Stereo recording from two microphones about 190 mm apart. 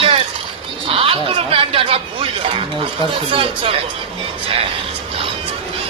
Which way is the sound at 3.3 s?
30° right (ahead or behind).